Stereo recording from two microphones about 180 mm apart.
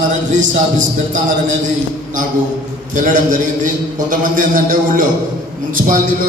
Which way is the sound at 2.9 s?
45° right (ahead or behind).